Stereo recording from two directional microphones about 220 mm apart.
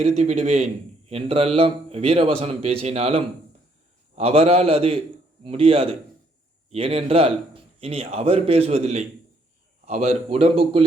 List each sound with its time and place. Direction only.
0.0 s a man's voice: 30° right (ahead or behind)